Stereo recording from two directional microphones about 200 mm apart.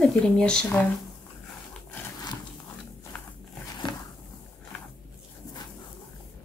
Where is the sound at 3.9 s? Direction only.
20° left (ahead or behind).